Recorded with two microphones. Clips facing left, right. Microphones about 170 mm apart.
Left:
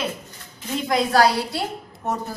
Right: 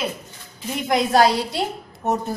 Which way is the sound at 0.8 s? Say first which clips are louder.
Right 1 dB; 20° right (ahead or behind).